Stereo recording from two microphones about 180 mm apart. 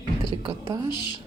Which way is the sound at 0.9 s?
25° left (ahead or behind).